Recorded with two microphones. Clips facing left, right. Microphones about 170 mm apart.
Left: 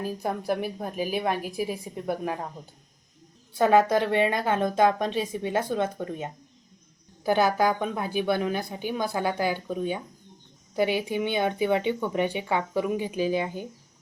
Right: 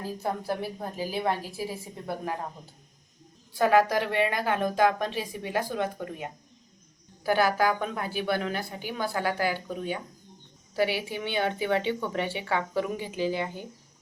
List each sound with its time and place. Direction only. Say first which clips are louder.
0.0 s speech: left 2 dB; 15° left (ahead or behind)
3.5 s a woman's voice: left 2 dB; 20° left (ahead or behind)